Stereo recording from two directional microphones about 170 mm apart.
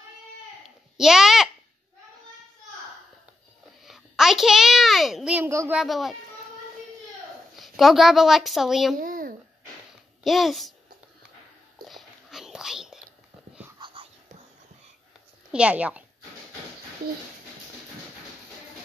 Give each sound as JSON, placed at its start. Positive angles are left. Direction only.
{"t": 0.9, "sound": "a sound", "side_deg": -5}
{"t": 3.8, "sound": "a sound", "side_deg": 0}
{"t": 5.8, "sound": "a child's voice", "side_deg": 0}
{"t": 7.5, "sound": "speech", "side_deg": 0}
{"t": 8.9, "sound": "a sound", "side_deg": -55}
{"t": 10.2, "sound": "a child's voice", "side_deg": 0}
{"t": 11.9, "sound": "whispering", "side_deg": 0}
{"t": 13.7, "sound": "whispering", "side_deg": -30}
{"t": 15.5, "sound": "a woman's voice", "side_deg": -5}